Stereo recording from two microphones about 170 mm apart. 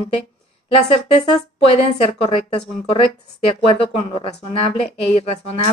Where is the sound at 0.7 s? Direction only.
35° left (ahead or behind).